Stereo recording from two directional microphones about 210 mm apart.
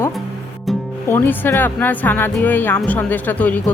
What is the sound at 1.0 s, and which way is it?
Speech, 10° left (ahead or behind).